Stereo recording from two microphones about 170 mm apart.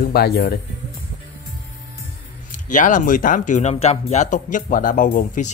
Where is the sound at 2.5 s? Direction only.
50° left (ahead or behind).